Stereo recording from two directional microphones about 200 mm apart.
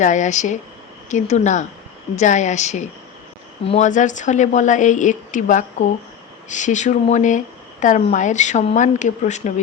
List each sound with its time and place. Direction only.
0.0 s speech: 40° left (ahead or behind)